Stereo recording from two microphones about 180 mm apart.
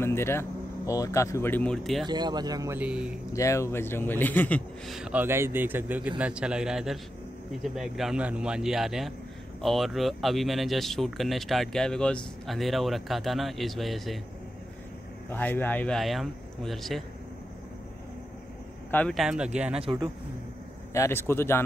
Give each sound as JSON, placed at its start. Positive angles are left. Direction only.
{"t": 0.0, "sound": "speech", "side_deg": 15}
{"t": 2.0, "sound": "speech", "side_deg": -25}
{"t": 2.8, "sound": "speech", "side_deg": -5}
{"t": 3.3, "sound": "speech", "side_deg": 15}
{"t": 15.2, "sound": "speech", "side_deg": 10}
{"t": 18.9, "sound": "a man's voice", "side_deg": 10}
{"t": 19.1, "sound": "speech", "side_deg": -5}
{"t": 19.8, "sound": "speech", "side_deg": -30}
{"t": 20.9, "sound": "speech", "side_deg": 15}